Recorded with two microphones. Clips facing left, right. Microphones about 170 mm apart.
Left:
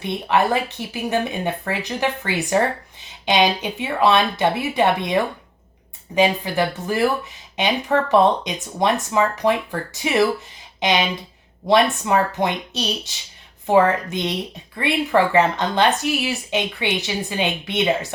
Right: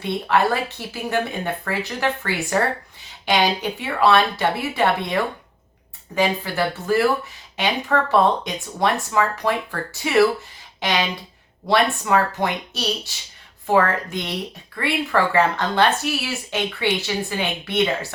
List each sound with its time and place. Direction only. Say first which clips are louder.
0.0 s speech: even; 20° left (ahead or behind)